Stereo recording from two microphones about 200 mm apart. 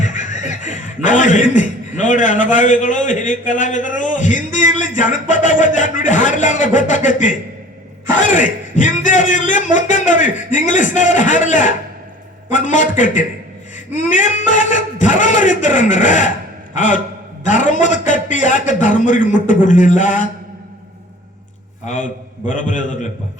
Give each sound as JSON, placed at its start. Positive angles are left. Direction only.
{"t": 0.0, "sound": "a man's voice", "side_deg": 40}
{"t": 21.8, "sound": "speech", "side_deg": 40}